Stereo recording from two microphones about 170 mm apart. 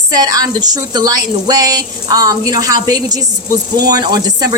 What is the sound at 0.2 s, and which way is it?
Speech, 20° right (ahead or behind).